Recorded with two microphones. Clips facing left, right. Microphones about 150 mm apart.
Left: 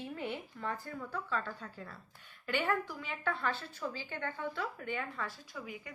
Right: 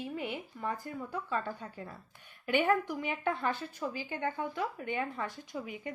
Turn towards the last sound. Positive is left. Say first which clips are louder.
# right 6 dB
turn(degrees=-20)  # may be behind; listen again after turning